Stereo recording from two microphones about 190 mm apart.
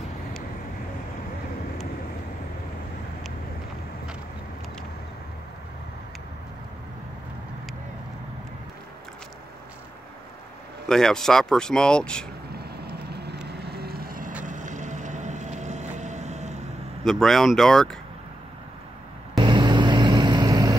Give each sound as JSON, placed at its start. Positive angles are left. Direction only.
{"t": 10.9, "sound": "speech", "side_deg": 5}
{"t": 12.5, "sound": "vehicle", "side_deg": -55}
{"t": 17.0, "sound": "speech", "side_deg": 0}
{"t": 19.4, "sound": "vehicle", "side_deg": -25}